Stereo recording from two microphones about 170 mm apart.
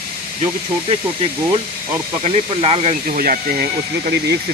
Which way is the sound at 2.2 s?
35° right (ahead or behind).